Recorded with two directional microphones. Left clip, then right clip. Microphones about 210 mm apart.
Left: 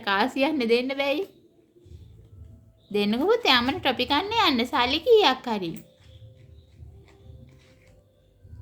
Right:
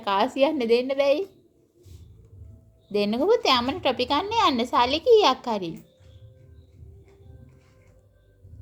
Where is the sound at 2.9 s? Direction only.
60° left (ahead or behind).